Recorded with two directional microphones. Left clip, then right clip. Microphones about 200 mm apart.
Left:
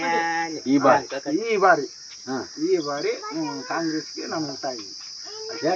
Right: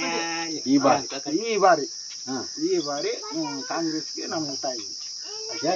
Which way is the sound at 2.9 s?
5° left (ahead or behind).